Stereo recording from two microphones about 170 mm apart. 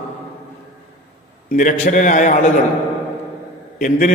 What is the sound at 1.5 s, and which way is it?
Speech, 50° left (ahead or behind).